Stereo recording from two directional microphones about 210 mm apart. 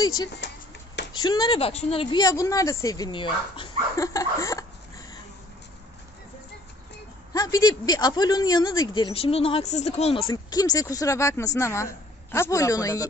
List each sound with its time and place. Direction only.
0.4 s speech: 55° left (ahead or behind)
1.1 s speech: 20° left (ahead or behind)
7.3 s speech: 15° left (ahead or behind)
10.3 s speech: 20° left (ahead or behind)